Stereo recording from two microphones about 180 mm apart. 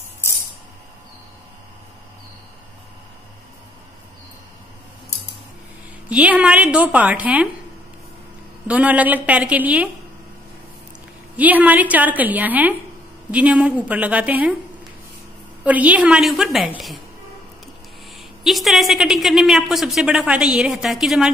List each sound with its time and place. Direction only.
6.0 s a woman's voice: 5° right (ahead or behind)
8.6 s a woman's voice: 10° right (ahead or behind)
11.3 s a woman's voice: 10° right (ahead or behind)
15.6 s a woman's voice: 10° right (ahead or behind)
18.1 s a woman's voice: centre (ahead or behind)